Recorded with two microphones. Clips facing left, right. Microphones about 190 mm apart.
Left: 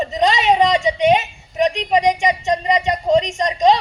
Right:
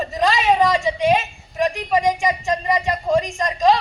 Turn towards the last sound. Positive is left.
turn(degrees=20)  # may be behind; listen again after turning